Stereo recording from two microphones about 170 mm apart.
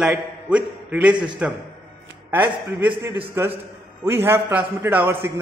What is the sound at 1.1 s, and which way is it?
Speech, 25° right (ahead or behind).